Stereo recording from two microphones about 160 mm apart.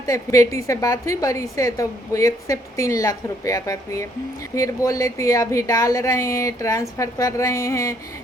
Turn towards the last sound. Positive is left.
turn(degrees=20)  # may be behind; listen again after turning